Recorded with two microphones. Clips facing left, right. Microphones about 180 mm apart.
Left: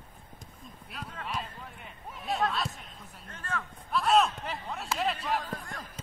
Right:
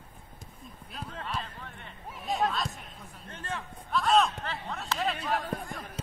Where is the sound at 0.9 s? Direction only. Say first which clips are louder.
Right 2 dB; 35° right (ahead or behind).